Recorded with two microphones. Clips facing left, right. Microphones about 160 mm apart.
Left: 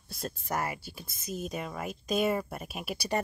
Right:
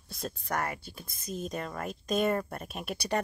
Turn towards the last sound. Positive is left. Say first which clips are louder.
# even
turn(degrees=5)  # may be behind; listen again after turning